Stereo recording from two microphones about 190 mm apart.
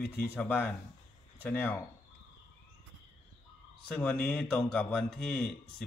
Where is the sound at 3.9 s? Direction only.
5° left (ahead or behind).